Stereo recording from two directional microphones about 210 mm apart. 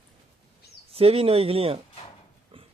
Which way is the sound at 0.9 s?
30° right (ahead or behind).